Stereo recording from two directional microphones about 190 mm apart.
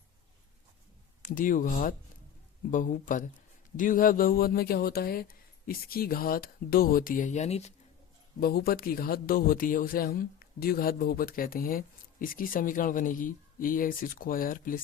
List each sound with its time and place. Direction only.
1.2 s a man's voice: 45° left (ahead or behind)
8.4 s a man's voice: 55° left (ahead or behind)